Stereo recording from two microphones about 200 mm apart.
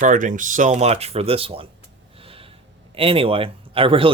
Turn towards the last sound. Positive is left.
turn(degrees=-25)  # may be behind; listen again after turning